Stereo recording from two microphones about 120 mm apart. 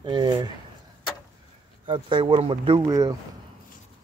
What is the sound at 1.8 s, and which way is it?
Speech, 45° right (ahead or behind).